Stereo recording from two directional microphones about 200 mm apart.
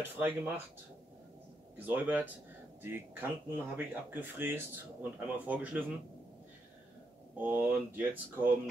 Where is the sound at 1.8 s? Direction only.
10° right (ahead or behind).